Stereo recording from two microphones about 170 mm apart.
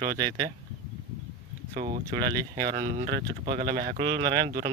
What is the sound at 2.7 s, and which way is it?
Speech, 50° right (ahead or behind).